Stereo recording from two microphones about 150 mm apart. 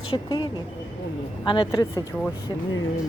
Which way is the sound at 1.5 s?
30° left (ahead or behind).